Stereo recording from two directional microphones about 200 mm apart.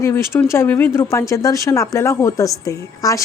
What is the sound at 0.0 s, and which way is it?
Speech, 15° left (ahead or behind).